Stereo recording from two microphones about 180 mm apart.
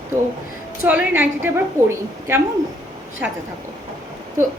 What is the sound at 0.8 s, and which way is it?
Speech, 10° right (ahead or behind).